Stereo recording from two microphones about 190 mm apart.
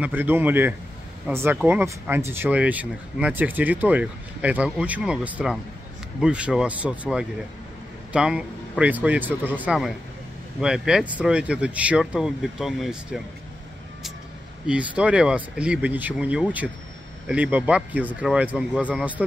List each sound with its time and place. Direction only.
0.0 s speech: 10° right (ahead or behind)
14.7 s speech: 5° right (ahead or behind)